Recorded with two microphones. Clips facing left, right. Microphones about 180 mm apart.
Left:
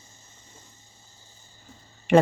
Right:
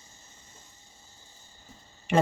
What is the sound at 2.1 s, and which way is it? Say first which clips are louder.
Speech: left 6 dB; 65° left (ahead or behind).